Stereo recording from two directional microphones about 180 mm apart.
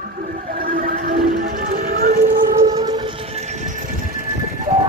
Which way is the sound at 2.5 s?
20° right (ahead or behind).